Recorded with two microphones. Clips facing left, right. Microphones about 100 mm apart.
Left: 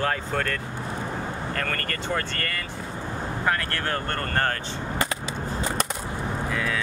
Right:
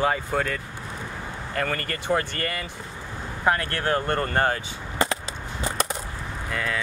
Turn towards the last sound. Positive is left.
turn(degrees=0)  # may be behind; listen again after turning